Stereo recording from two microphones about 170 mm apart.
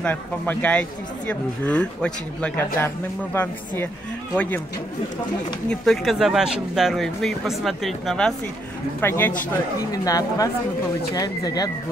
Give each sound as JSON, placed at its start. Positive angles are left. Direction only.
{"t": 0.0, "sound": "speech", "side_deg": 10}
{"t": 5.7, "sound": "speech", "side_deg": 0}
{"t": 9.0, "sound": "a woman's voice", "side_deg": 15}